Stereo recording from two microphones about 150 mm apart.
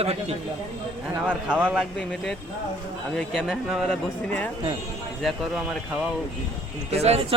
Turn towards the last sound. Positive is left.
turn(degrees=-45)  # may be behind; listen again after turning